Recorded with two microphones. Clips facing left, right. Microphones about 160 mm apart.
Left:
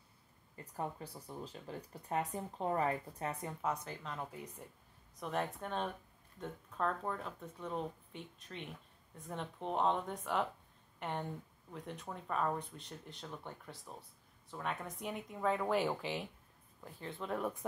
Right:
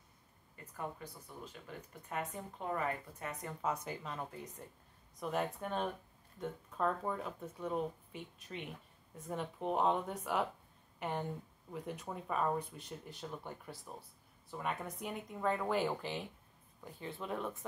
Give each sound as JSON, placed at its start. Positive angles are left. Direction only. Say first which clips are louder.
{"t": 0.7, "sound": "speech", "louder": "left 2 dB", "side_deg": 35}
{"t": 3.8, "sound": "speech", "louder": "right 1 dB", "side_deg": -10}
{"t": 17.4, "sound": "speech", "louder": "left 2 dB", "side_deg": 15}